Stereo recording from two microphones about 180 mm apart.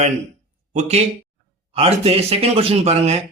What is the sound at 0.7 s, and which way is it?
Speech, 40° right (ahead or behind).